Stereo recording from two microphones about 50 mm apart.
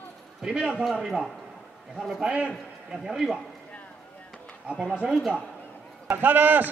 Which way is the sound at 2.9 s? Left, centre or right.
Centre.